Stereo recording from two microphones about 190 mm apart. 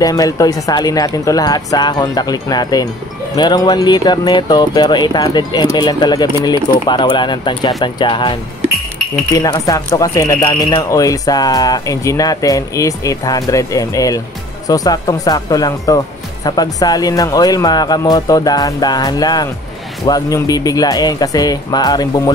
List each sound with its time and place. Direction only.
0.0 s speech: 20° left (ahead or behind)